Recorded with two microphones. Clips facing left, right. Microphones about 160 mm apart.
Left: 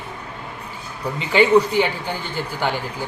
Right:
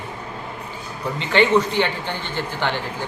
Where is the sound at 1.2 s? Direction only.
10° left (ahead or behind).